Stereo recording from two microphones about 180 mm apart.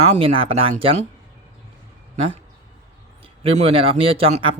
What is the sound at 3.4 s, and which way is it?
Speech, 35° right (ahead or behind).